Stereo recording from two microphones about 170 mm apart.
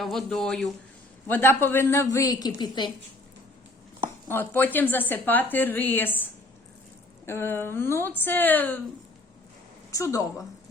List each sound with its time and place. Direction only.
0.0 s speech: centre (ahead or behind)
1.3 s a woman's voice: 15° left (ahead or behind)
4.3 s a woman's voice: 10° left (ahead or behind)
7.3 s a woman's voice: 15° left (ahead or behind)
9.9 s a woman's voice: 20° left (ahead or behind)